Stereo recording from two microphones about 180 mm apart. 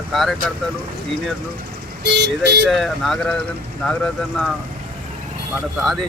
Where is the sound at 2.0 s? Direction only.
70° right (ahead or behind).